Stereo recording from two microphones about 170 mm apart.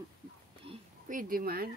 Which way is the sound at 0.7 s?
35° right (ahead or behind).